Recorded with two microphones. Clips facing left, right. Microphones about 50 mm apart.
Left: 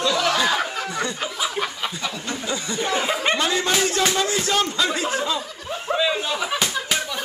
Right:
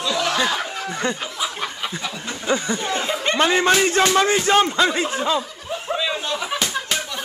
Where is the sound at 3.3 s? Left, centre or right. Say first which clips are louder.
Right 5 dB; right.